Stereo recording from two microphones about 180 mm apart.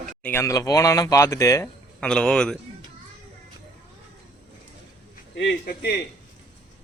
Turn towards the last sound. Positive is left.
turn(degrees=70)  # may be behind; listen again after turning